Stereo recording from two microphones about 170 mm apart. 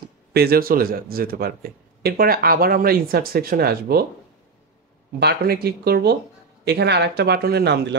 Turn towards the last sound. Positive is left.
turn(degrees=-75)  # may be behind; listen again after turning